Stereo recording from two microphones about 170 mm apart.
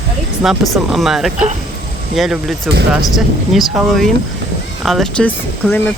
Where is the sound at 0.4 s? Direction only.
Centre (ahead or behind).